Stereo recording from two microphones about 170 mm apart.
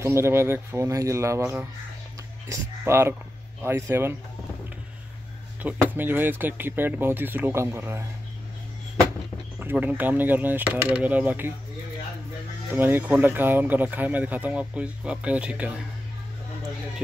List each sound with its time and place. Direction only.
0.0 s speech: 15° right (ahead or behind)
5.6 s speech: 10° right (ahead or behind)
9.6 s speech: 10° right (ahead or behind)
12.7 s speech: 10° right (ahead or behind)